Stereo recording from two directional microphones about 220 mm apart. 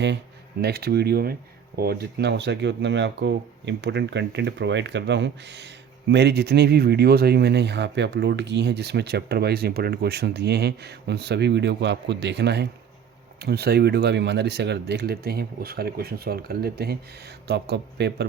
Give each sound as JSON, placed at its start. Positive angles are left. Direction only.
{"t": 0.6, "sound": "speech", "side_deg": -45}